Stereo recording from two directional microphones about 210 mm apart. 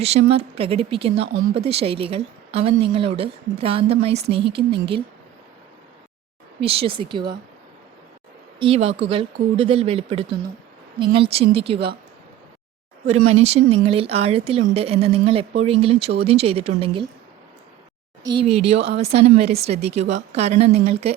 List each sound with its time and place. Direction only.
0.0 s speech: 30° right (ahead or behind)
6.6 s speech: 25° right (ahead or behind)
8.5 s speech: 25° right (ahead or behind)
13.3 s speech: 30° right (ahead or behind)
18.2 s speech: 20° right (ahead or behind)